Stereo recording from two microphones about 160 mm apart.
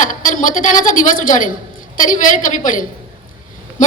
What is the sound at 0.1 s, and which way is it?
A woman's voice, 55° left (ahead or behind).